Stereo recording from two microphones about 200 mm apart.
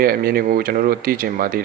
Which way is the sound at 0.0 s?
50° right (ahead or behind).